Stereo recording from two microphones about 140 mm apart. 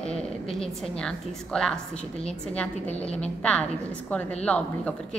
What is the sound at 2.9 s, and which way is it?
Speech, 50° left (ahead or behind).